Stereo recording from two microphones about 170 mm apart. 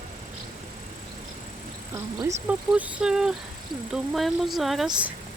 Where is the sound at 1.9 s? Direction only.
20° right (ahead or behind).